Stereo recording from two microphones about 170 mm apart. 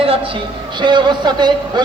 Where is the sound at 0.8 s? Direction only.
25° right (ahead or behind).